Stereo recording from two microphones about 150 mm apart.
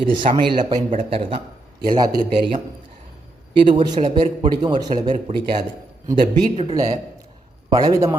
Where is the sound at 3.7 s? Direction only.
35° right (ahead or behind).